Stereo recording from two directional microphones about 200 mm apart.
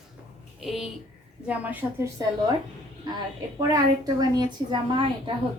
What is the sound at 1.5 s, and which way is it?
Speech, 10° right (ahead or behind).